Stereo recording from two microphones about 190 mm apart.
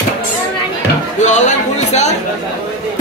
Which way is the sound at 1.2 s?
40° left (ahead or behind).